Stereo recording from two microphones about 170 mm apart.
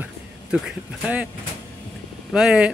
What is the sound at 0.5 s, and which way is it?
Speech, 5° right (ahead or behind).